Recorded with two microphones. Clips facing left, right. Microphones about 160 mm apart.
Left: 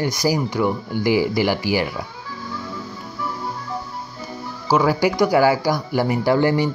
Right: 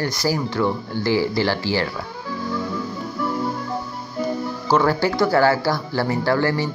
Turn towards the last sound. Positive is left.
turn(degrees=15)  # may be behind; listen again after turning